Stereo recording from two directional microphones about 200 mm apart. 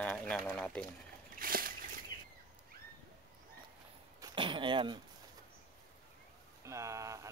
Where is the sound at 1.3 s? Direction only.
45° right (ahead or behind).